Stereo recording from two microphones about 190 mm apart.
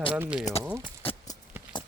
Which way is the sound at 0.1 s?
5° right (ahead or behind).